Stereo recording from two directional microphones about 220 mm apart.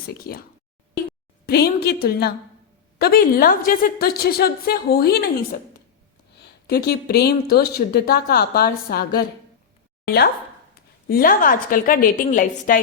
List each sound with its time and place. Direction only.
0.1 s speech: 45° left (ahead or behind)
1.5 s speech: 45° left (ahead or behind)
6.3 s speech: 45° left (ahead or behind)
11.1 s a woman's voice: 40° left (ahead or behind)